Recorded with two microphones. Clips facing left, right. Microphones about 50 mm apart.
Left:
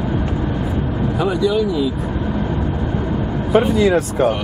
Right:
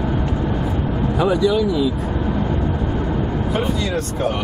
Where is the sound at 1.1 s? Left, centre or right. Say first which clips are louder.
Right 1 dB; centre.